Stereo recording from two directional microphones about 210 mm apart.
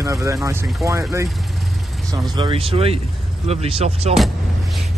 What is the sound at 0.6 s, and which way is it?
Speech, centre (ahead or behind).